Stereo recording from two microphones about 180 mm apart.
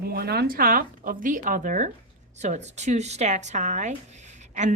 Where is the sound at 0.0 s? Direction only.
60° right (ahead or behind).